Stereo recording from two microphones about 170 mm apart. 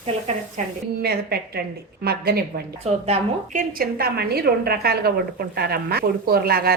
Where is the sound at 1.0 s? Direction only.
70° right (ahead or behind).